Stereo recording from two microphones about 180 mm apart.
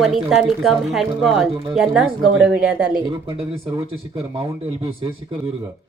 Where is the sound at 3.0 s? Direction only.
30° right (ahead or behind).